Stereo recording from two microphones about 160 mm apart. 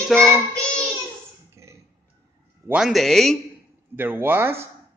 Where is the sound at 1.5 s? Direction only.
15° right (ahead or behind).